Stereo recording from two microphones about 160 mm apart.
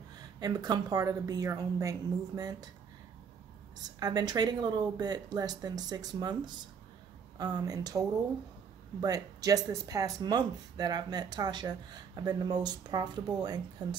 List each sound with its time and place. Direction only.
0.4 s speech: 25° right (ahead or behind)
3.7 s speech: 25° right (ahead or behind)